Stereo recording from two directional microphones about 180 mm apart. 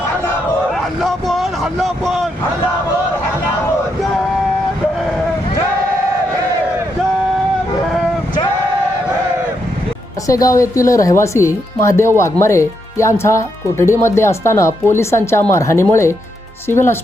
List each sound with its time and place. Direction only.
0.7 s vehicle: centre (ahead or behind)
10.2 s speech: 20° left (ahead or behind)